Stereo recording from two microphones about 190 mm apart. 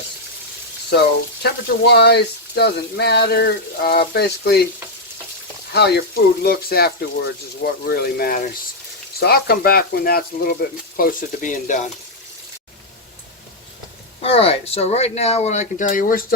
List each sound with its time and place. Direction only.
0.9 s speech: 60° left (ahead or behind)
5.7 s speech: 55° left (ahead or behind)
14.2 s speech: 30° left (ahead or behind)